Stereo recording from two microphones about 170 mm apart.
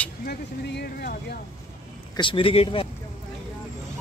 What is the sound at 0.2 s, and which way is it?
Speech, 70° left (ahead or behind).